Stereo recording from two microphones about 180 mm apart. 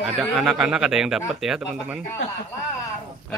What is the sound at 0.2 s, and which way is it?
Speech, centre (ahead or behind).